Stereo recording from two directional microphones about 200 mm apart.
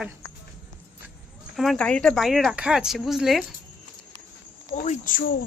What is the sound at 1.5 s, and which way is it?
Speech, 5° left (ahead or behind).